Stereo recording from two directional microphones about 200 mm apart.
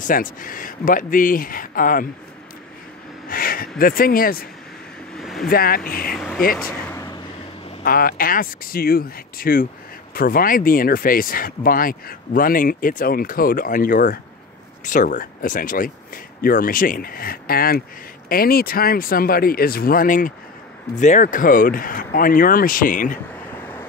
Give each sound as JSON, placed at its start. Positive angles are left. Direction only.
{"t": 0.0, "sound": "speech", "side_deg": 45}
{"t": 3.3, "sound": "speech", "side_deg": 45}
{"t": 5.1, "sound": "vehicle", "side_deg": 0}
{"t": 5.5, "sound": "speech", "side_deg": 50}
{"t": 6.1, "sound": "speech", "side_deg": 0}
{"t": 6.9, "sound": "a sound", "side_deg": 15}
{"t": 7.8, "sound": "speech", "side_deg": 45}
{"t": 23.5, "sound": "vehicle", "side_deg": 10}